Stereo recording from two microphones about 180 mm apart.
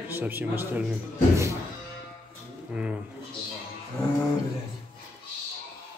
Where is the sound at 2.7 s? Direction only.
5° right (ahead or behind).